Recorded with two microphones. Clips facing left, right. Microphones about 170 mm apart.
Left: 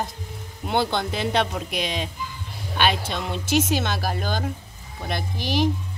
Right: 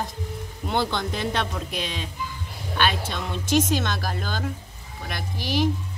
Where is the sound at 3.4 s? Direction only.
10° left (ahead or behind).